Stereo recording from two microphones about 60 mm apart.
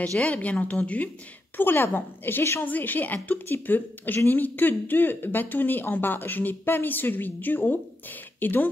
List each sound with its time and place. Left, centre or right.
0.1 s a woman's voice: left
1.6 s speech: left